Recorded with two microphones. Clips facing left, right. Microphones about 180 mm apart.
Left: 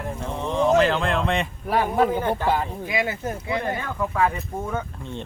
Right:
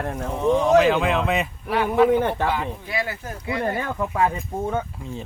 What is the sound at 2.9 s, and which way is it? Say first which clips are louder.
Speech: left 3 dB; 20° left (ahead or behind).